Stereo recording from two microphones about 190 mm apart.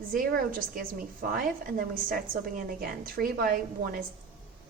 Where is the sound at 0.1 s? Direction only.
50° right (ahead or behind).